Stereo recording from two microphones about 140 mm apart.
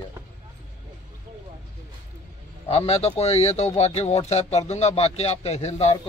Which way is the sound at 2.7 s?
45° left (ahead or behind).